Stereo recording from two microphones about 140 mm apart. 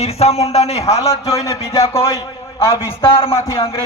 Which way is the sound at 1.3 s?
25° left (ahead or behind).